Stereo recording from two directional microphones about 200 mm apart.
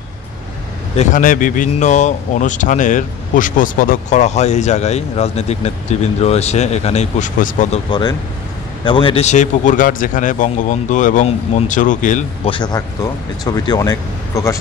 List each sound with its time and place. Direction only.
0.9 s speech: 40° left (ahead or behind)
7.9 s speech: 20° left (ahead or behind); by 12.3 s 40° left (ahead or behind)
12.4 s speech: 25° left (ahead or behind)